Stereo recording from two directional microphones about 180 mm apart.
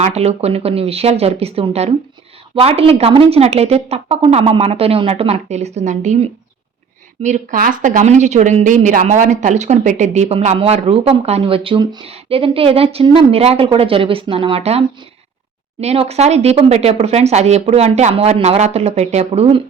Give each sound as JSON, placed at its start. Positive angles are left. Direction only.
{"t": 0.0, "sound": "speech", "side_deg": -35}